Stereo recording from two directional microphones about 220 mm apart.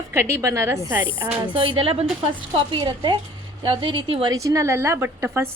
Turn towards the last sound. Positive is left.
turn(degrees=-10)  # may be behind; listen again after turning